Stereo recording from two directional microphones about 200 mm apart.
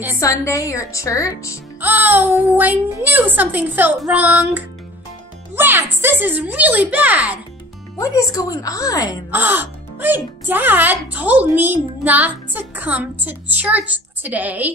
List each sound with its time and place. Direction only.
0.2 s a woman's voice: 15° left (ahead or behind)
1.8 s speech: 10° right (ahead or behind)
8.0 s a woman's voice: 15° left (ahead or behind)
9.3 s speech: 10° right (ahead or behind)